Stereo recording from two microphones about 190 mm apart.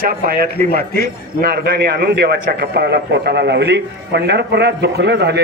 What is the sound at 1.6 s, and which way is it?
A man's voice, 60° right (ahead or behind).